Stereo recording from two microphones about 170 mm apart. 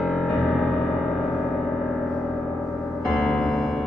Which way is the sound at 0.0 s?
Centre (ahead or behind).